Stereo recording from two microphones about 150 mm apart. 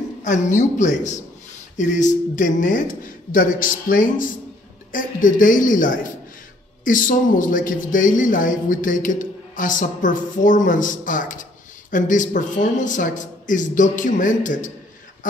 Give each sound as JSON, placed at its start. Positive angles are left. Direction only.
{"t": 0.2, "sound": "speech", "side_deg": 55}